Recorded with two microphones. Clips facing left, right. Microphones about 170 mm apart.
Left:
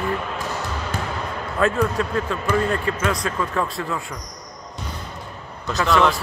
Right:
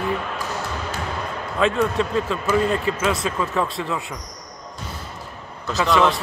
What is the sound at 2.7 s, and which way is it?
A man's voice, 5° right (ahead or behind).